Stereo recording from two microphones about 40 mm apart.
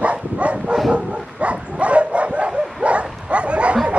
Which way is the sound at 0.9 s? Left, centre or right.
Right.